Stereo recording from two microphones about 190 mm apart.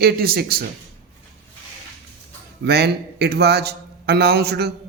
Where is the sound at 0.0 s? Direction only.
55° right (ahead or behind).